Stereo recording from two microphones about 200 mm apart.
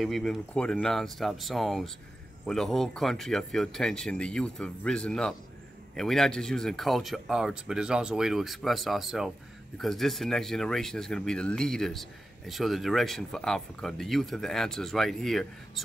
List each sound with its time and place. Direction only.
0.0 s speech: centre (ahead or behind)